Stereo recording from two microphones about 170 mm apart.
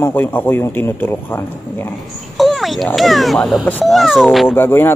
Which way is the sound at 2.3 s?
Centre (ahead or behind).